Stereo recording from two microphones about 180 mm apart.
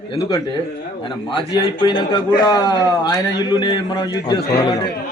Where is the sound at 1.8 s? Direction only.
25° left (ahead or behind).